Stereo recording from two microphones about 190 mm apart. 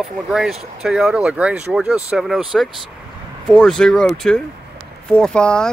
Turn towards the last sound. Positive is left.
turn(degrees=5)  # may be behind; listen again after turning